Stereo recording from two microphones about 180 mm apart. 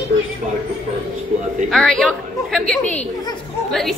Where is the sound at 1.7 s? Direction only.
5° left (ahead or behind).